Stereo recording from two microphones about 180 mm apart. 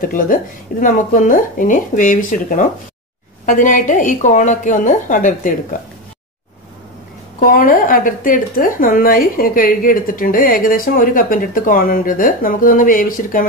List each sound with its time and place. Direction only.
0.0 s speech: 50° left (ahead or behind)
7.3 s speech: 50° left (ahead or behind)